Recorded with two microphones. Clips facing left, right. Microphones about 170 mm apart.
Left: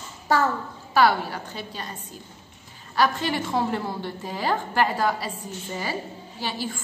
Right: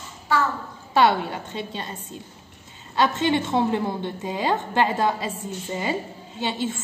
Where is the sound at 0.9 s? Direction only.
25° right (ahead or behind).